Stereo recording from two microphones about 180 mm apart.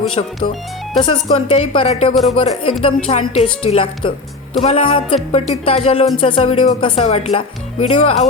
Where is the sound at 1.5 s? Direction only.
35° left (ahead or behind).